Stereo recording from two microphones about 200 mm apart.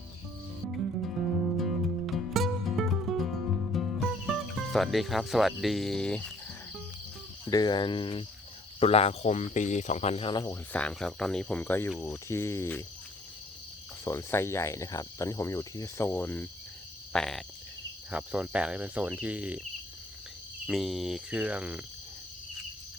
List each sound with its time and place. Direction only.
1.5 s music: centre (ahead or behind)
7.4 s cricket: 20° left (ahead or behind)
8.8 s speech: 30° left (ahead or behind); by 12.8 s 10° left (ahead or behind)
14.0 s speech: 15° left (ahead or behind); by 19.6 s 5° right (ahead or behind)
20.7 s speech: centre (ahead or behind)